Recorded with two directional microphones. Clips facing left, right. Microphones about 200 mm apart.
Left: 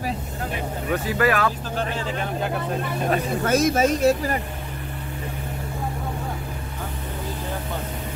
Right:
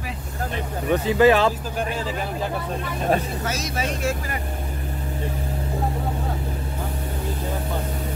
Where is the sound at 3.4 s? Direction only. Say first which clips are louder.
Left 8 dB; 55° left (ahead or behind).